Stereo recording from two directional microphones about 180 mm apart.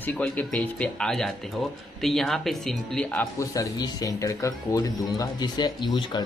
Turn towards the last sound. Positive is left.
turn(degrees=25)  # may be behind; listen again after turning